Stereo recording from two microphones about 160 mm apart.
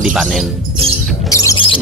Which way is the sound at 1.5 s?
35° left (ahead or behind).